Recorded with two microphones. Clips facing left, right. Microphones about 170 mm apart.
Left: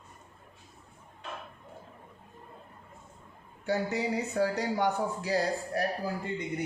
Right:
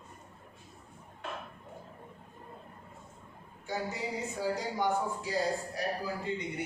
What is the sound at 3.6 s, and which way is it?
Speech, 70° left (ahead or behind).